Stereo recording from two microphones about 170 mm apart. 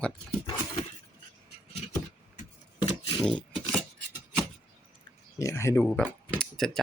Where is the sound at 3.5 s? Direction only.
Centre (ahead or behind).